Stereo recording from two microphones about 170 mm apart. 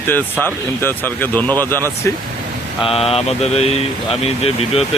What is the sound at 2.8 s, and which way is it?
Mantra, 35° left (ahead or behind).